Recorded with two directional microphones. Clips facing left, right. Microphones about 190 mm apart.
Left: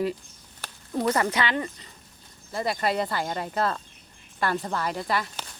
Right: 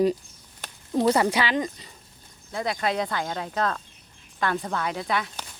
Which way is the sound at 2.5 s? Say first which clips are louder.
Even; 5° left (ahead or behind).